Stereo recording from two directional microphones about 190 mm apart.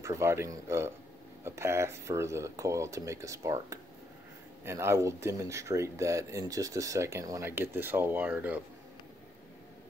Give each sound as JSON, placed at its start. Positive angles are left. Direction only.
{"t": 0.0, "sound": "speech", "side_deg": -15}